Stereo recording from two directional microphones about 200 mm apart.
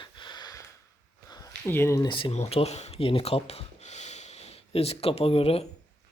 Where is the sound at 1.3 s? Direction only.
15° left (ahead or behind).